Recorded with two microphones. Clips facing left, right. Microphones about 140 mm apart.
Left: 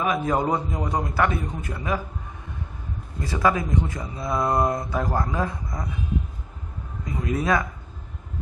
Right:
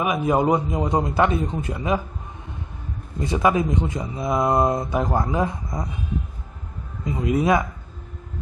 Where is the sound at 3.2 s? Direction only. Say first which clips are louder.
Right 3 dB; 20° right (ahead or behind).